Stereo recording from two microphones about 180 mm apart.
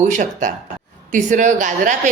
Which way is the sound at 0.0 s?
45° right (ahead or behind).